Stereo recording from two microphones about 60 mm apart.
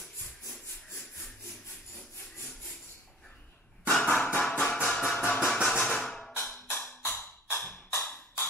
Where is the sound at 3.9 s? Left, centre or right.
Centre.